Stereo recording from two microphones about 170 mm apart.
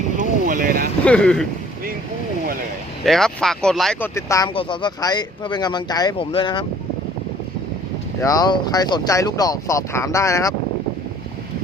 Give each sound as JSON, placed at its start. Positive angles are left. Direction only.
{"t": 0.2, "sound": "boat", "side_deg": -50}
{"t": 1.0, "sound": "speech", "side_deg": 5}
{"t": 3.0, "sound": "speech", "side_deg": 0}
{"t": 4.1, "sound": "speech", "side_deg": 20}
{"t": 8.2, "sound": "speech", "side_deg": 20}